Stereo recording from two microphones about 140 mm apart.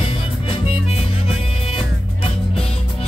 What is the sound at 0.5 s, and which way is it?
Music, 40° left (ahead or behind).